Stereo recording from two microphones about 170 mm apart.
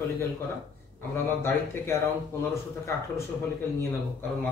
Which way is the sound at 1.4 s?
15° left (ahead or behind).